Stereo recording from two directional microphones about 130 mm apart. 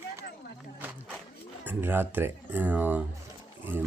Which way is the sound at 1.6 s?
15° right (ahead or behind).